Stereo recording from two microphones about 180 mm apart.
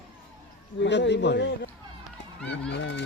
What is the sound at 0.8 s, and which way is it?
Speech, 75° left (ahead or behind).